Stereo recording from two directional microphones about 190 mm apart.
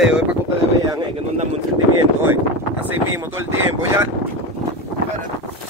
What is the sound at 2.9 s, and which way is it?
Speech, 10° right (ahead or behind).